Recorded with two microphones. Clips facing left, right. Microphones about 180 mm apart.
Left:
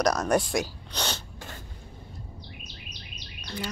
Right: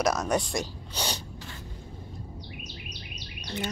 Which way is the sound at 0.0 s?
Centre (ahead or behind).